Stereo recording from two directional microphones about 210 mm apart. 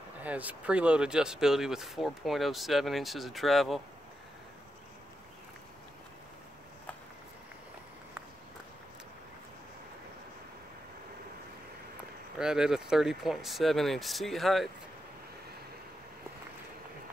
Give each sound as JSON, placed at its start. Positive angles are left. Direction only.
{"t": 0.2, "sound": "speech", "side_deg": -5}
{"t": 12.4, "sound": "speech", "side_deg": -5}